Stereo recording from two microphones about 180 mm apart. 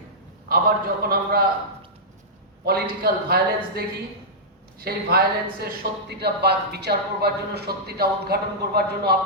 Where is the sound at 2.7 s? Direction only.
60° right (ahead or behind).